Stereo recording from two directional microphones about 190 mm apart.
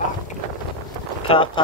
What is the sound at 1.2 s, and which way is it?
Speech, 30° left (ahead or behind).